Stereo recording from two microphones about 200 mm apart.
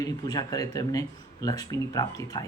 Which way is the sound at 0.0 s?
20° left (ahead or behind).